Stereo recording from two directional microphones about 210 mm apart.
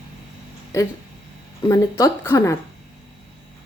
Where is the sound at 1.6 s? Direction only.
15° left (ahead or behind).